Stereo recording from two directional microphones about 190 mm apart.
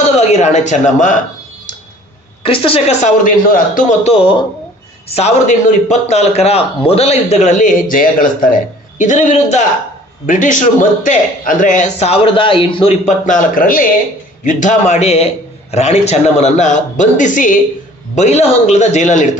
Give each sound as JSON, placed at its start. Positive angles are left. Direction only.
{"t": 0.2, "sound": "a man's voice", "side_deg": 35}
{"t": 2.4, "sound": "a woman's voice", "side_deg": 30}
{"t": 3.2, "sound": "a man's voice", "side_deg": 45}